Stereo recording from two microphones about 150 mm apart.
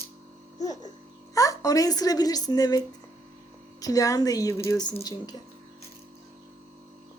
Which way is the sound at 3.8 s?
25° left (ahead or behind).